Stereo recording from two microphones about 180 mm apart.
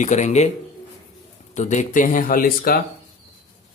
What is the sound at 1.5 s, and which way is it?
Speech, 40° left (ahead or behind).